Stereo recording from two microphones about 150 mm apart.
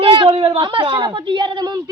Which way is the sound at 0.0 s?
35° right (ahead or behind).